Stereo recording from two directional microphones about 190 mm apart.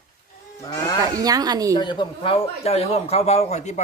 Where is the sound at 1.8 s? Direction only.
25° left (ahead or behind).